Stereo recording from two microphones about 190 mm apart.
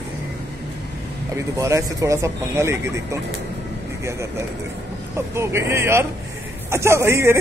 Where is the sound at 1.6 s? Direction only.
15° right (ahead or behind).